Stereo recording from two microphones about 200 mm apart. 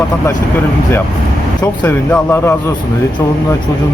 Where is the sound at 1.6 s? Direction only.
10° left (ahead or behind).